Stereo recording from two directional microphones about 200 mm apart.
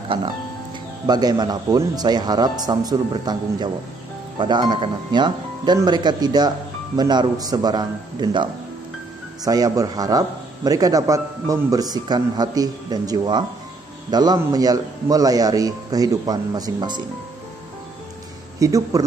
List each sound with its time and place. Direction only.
1.0 s a man's voice: 20° right (ahead or behind)
18.6 s a man's voice: 15° right (ahead or behind)